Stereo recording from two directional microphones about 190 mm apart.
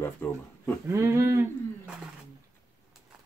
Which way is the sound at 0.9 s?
15° right (ahead or behind).